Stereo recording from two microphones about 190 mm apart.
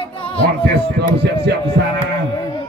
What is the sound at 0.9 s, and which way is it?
Speech, 65° right (ahead or behind).